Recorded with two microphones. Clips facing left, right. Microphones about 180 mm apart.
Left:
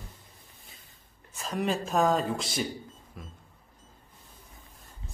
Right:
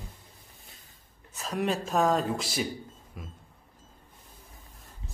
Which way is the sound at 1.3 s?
Centre (ahead or behind).